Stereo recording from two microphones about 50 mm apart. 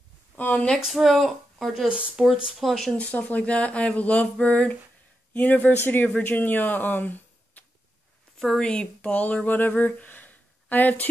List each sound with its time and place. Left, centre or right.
0.4 s speech: left
0.7 s speech: centre
1.9 s speech: right
2.6 s speech: centre
3.0 s speech: left
8.4 s speech: centre
8.6 s speech: left
9.8 s a sound: left